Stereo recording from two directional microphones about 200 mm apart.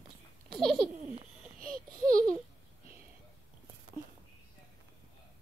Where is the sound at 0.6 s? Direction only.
Centre (ahead or behind).